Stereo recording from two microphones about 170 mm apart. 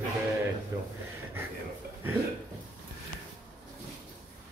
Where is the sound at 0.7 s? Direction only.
20° right (ahead or behind).